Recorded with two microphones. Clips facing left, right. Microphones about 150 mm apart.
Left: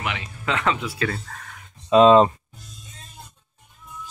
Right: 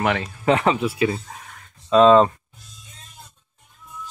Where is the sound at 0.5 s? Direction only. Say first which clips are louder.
Right 6 dB; 25° right (ahead or behind).